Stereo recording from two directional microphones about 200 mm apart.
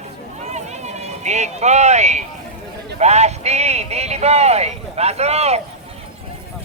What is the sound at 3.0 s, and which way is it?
Speech, 35° right (ahead or behind).